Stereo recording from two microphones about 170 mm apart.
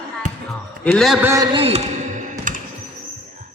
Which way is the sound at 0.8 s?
5° left (ahead or behind).